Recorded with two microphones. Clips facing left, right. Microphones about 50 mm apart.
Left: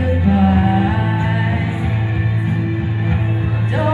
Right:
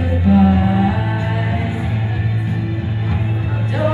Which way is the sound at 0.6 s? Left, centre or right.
Centre.